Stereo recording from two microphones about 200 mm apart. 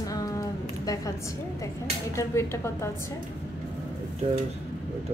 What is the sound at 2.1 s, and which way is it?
Speech, 15° left (ahead or behind).